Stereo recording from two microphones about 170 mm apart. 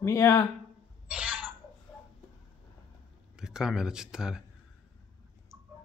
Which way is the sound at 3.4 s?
5° right (ahead or behind).